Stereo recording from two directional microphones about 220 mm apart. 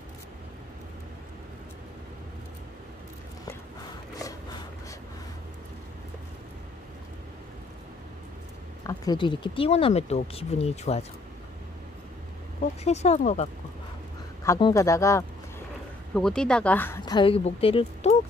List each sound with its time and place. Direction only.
8.8 s speech: 20° left (ahead or behind)
12.8 s speech: 30° left (ahead or behind)
14.4 s speech: 15° left (ahead or behind)
16.2 s speech: 5° left (ahead or behind); by 18.1 s 25° left (ahead or behind)